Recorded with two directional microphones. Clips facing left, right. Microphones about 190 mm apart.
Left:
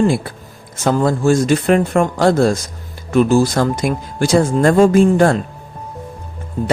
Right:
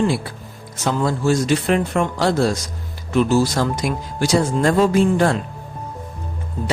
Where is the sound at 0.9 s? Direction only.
50° left (ahead or behind).